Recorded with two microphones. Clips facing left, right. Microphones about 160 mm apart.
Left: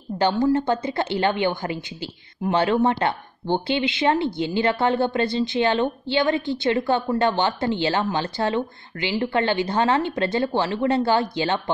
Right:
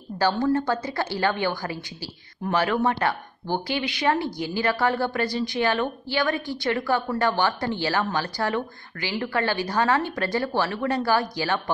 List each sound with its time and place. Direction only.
0.2 s a woman's voice: 20° left (ahead or behind)